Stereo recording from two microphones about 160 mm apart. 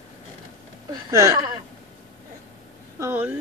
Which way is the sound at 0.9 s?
20° right (ahead or behind).